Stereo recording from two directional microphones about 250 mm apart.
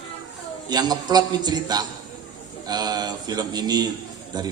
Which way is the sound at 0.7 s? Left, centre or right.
Centre.